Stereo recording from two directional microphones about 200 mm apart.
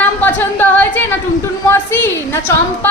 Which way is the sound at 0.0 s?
10° left (ahead or behind).